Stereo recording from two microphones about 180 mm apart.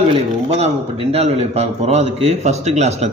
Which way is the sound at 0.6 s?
35° right (ahead or behind).